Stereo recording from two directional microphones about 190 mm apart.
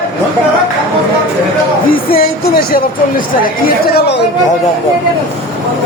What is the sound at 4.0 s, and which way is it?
Speech, 65° left (ahead or behind).